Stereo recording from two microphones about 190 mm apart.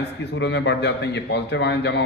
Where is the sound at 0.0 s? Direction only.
65° left (ahead or behind).